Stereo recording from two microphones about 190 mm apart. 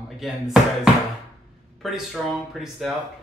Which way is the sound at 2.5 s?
Centre (ahead or behind).